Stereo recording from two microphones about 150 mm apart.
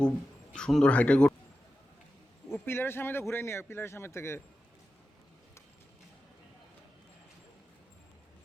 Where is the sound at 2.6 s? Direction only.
15° left (ahead or behind).